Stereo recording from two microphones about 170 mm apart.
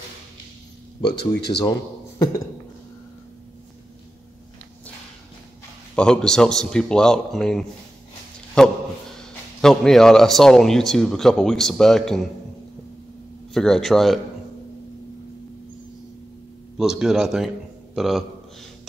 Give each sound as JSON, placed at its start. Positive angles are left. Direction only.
{"t": 1.5, "sound": "a man's voice", "side_deg": 30}
{"t": 5.9, "sound": "a man's voice", "side_deg": 5}
{"t": 13.5, "sound": "a man's voice", "side_deg": 0}
{"t": 16.7, "sound": "a man's voice", "side_deg": -5}